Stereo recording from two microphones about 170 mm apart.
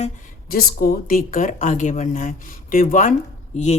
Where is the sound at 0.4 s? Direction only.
60° left (ahead or behind).